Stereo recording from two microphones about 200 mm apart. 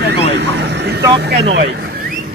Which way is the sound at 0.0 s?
55° right (ahead or behind).